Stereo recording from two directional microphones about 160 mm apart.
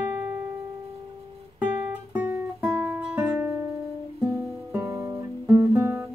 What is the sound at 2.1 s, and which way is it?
Guitar, 5° right (ahead or behind).